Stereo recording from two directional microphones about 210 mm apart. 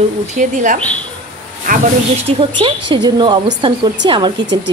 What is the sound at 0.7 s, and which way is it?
Speech, 5° left (ahead or behind).